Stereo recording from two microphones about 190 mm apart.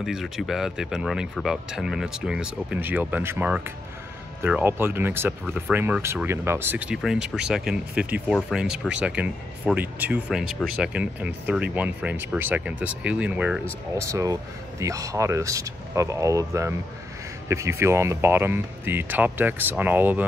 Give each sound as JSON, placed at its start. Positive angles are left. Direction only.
{"t": 0.0, "sound": "speech", "side_deg": 0}